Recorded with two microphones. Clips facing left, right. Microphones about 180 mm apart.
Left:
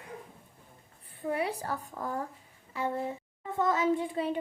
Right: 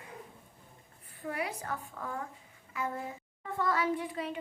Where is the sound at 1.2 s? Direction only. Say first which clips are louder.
Left 5 dB; 25° left (ahead or behind).